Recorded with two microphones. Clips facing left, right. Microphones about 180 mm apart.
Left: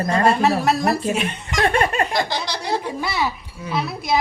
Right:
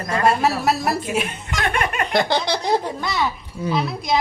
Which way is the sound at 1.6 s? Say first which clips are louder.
Left 4 dB; 30° left (ahead or behind).